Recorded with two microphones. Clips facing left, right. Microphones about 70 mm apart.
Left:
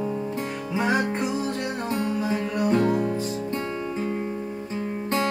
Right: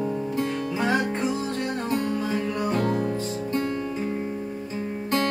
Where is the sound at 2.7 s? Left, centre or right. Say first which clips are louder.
Left 3 dB; centre.